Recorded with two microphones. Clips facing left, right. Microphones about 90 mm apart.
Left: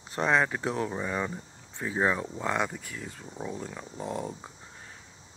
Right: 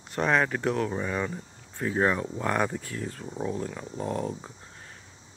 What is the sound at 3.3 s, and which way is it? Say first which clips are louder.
Speech: right 5 dB; 5° right (ahead or behind).